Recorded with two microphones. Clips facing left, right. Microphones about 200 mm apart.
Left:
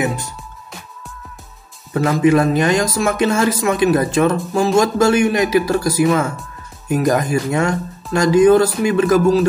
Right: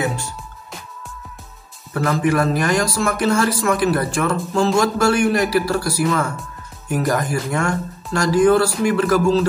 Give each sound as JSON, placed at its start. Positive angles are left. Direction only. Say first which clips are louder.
{"t": 0.0, "sound": "music", "louder": "left 3 dB", "side_deg": 20}
{"t": 2.0, "sound": "speech", "louder": "left 4 dB", "side_deg": 20}